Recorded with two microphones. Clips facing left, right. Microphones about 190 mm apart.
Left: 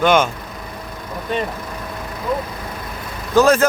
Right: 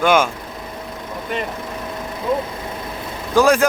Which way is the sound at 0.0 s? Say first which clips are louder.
Left 1 dB; 10° right (ahead or behind).